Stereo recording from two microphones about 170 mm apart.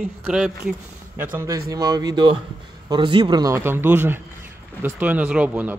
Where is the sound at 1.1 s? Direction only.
15° right (ahead or behind).